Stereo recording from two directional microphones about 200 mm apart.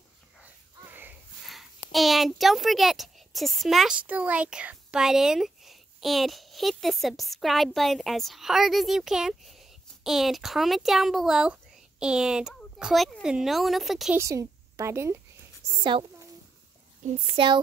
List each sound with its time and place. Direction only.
0.4 s a child's voice: 10° right (ahead or behind)
14.1 s a woman's voice: 15° right (ahead or behind)
15.7 s speech: 25° right (ahead or behind)